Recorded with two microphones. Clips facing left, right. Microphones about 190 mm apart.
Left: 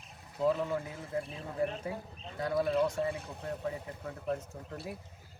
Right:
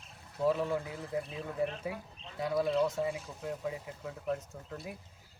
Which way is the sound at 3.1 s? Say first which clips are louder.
Even; 60° left (ahead or behind).